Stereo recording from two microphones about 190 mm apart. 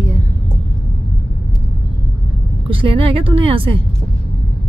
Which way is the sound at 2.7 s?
30° right (ahead or behind).